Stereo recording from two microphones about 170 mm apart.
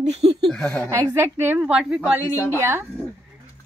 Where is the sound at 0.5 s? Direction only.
5° left (ahead or behind).